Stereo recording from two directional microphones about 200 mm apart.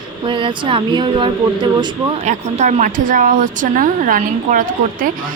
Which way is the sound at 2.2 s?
35° right (ahead or behind).